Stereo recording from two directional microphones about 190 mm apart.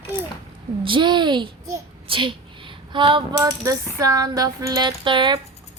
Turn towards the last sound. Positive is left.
turn(degrees=-25)  # may be behind; listen again after turning